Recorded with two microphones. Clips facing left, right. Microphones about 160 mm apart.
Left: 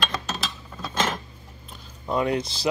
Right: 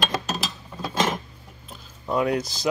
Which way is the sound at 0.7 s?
10° right (ahead or behind).